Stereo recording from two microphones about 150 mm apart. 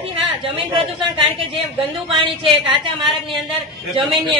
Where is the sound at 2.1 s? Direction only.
35° right (ahead or behind).